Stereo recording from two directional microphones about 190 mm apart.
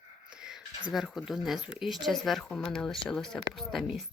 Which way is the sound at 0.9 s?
Centre (ahead or behind).